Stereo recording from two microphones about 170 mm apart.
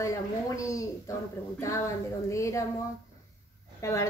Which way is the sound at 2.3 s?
15° left (ahead or behind).